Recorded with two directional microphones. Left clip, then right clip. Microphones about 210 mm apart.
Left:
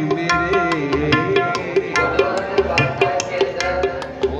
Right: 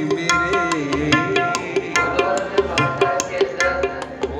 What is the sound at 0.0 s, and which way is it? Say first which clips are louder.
Music: even; 50° right (ahead or behind).